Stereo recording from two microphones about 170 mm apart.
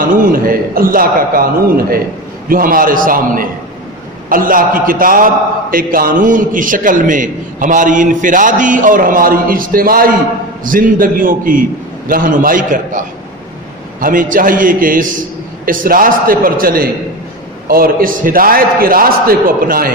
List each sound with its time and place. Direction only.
0.1 s a man's voice: 55° right (ahead or behind)